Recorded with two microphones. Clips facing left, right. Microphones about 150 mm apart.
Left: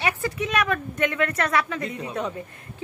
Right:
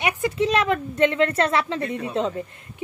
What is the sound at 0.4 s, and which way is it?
A woman's voice, 30° right (ahead or behind).